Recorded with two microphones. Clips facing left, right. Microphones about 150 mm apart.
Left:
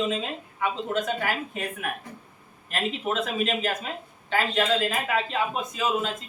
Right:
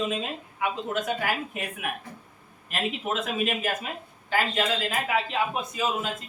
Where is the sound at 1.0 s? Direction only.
10° right (ahead or behind).